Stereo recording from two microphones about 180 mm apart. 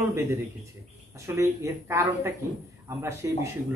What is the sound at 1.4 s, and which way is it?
Speech, 15° right (ahead or behind).